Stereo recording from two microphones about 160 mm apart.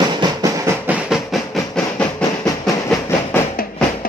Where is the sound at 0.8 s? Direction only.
5° right (ahead or behind).